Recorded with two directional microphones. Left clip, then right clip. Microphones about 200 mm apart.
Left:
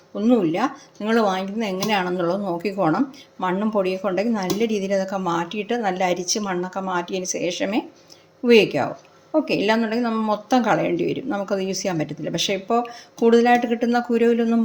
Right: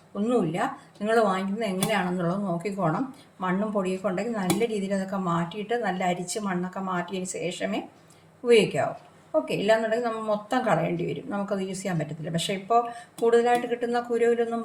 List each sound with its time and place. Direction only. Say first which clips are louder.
0.2 s speech: left 6 dB; 40° left (ahead or behind)